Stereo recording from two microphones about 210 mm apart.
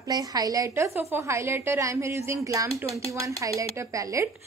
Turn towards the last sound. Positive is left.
turn(degrees=-15)  # may be behind; listen again after turning